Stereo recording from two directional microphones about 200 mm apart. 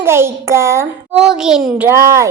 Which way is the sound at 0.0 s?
15° right (ahead or behind).